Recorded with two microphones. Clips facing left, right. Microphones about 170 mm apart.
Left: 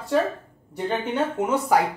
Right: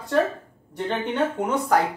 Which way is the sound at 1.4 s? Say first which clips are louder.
Left 1 dB; 5° left (ahead or behind).